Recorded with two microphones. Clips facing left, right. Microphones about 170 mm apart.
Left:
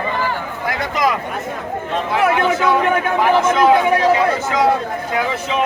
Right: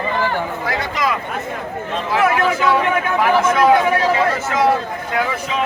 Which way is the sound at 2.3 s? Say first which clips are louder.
Left 1 dB; 20° left (ahead or behind).